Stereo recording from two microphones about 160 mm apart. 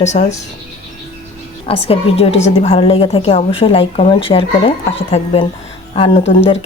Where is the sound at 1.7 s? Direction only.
35° left (ahead or behind).